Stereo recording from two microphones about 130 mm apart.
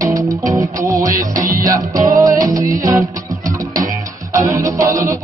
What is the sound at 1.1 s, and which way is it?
Music, 90° right.